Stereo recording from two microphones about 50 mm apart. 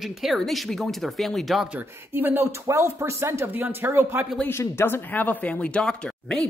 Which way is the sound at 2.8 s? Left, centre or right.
Right.